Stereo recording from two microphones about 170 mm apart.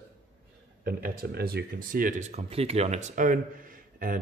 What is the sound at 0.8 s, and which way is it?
Speech, 60° right (ahead or behind).